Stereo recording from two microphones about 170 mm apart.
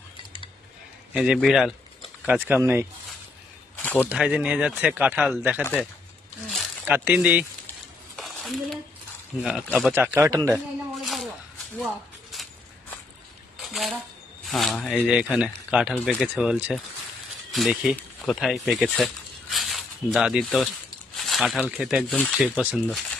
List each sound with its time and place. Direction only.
1.1 s speech: 5° right (ahead or behind)
4.0 s speech: 5° right (ahead or behind)
6.8 s speech: 10° right (ahead or behind)
8.1 s a sound: centre (ahead or behind)
9.4 s speech: 5° right (ahead or behind)
10.2 s speech: 20° right (ahead or behind)
11.0 s a sound: centre (ahead or behind)
13.7 s speech: centre (ahead or behind)
18.7 s a sound: centre (ahead or behind)
21.2 s speech: centre (ahead or behind)
22.1 s speech: 5° left (ahead or behind)
22.5 s speech: 5° right (ahead or behind)